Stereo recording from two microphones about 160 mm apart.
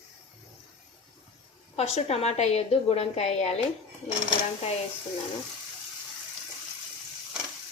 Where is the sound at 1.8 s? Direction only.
40° left (ahead or behind).